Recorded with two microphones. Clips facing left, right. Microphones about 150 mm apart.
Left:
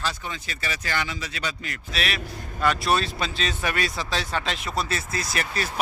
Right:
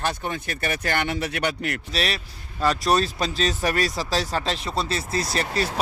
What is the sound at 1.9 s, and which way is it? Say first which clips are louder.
A man's voice: right 2 dB; 35° right (ahead or behind).